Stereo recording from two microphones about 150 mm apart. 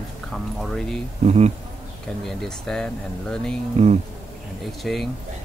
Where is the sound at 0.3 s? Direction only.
5° left (ahead or behind).